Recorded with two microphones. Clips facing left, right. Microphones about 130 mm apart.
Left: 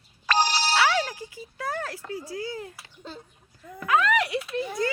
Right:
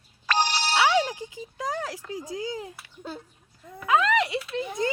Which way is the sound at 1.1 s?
20° right (ahead or behind).